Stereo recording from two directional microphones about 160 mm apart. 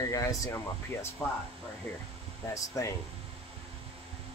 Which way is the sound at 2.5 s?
20° left (ahead or behind).